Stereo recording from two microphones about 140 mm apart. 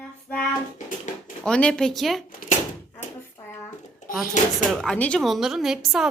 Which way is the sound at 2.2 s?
75° left (ahead or behind).